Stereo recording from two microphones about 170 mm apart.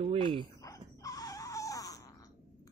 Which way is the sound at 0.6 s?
20° left (ahead or behind).